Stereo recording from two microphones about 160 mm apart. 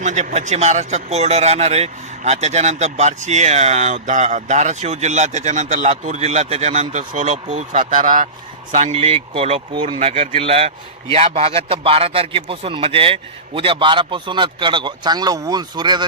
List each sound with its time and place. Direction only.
0.0 s speech: 50° right (ahead or behind)
8.7 s a man's voice: 40° right (ahead or behind)